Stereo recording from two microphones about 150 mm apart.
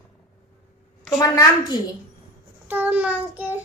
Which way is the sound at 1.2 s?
25° left (ahead or behind).